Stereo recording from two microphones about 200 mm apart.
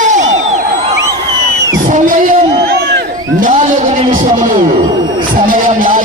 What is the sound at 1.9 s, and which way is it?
Music, 40° right (ahead or behind).